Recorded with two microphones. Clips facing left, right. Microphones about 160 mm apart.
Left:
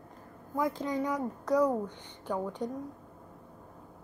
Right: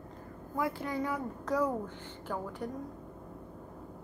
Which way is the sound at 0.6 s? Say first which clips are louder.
Left 3 dB; 15° left (ahead or behind).